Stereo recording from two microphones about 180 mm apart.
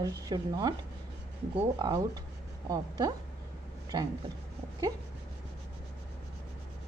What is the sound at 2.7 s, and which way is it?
A woman's voice, 20° right (ahead or behind).